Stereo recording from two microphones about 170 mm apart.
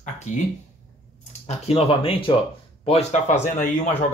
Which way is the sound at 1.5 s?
40° left (ahead or behind).